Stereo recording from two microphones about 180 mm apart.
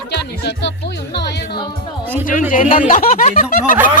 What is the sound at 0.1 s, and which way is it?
Music, 70° left (ahead or behind).